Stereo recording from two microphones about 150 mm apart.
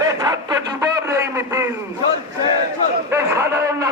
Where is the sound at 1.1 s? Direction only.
20° right (ahead or behind).